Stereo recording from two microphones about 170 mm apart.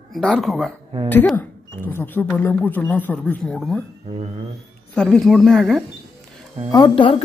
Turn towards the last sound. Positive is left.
turn(degrees=30)  # may be behind; listen again after turning